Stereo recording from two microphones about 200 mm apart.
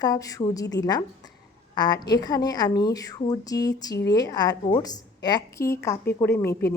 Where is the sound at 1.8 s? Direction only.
20° left (ahead or behind).